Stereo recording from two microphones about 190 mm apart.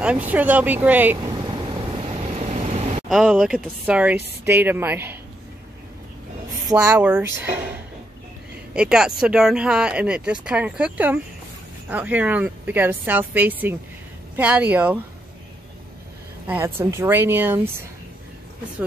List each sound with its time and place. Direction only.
0.0 s vehicle: 5° right (ahead or behind); by 3.0 s 35° right (ahead or behind)
3.1 s speech: centre (ahead or behind)
6.8 s speech: 10° right (ahead or behind)
8.7 s speech: 5° right (ahead or behind)
16.4 s speech: 10° right (ahead or behind)